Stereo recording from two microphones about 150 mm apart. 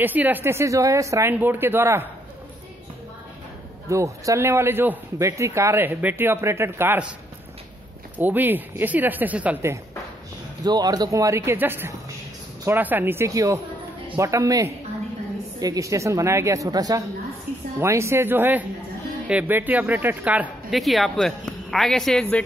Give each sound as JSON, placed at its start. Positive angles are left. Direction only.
{"t": 0.0, "sound": "a man's voice", "side_deg": -10}
{"t": 3.9, "sound": "a man's voice", "side_deg": -20}
{"t": 8.2, "sound": "a man's voice", "side_deg": -10}
{"t": 10.6, "sound": "a woman's voice", "side_deg": -25}
{"t": 20.8, "sound": "speech", "side_deg": 0}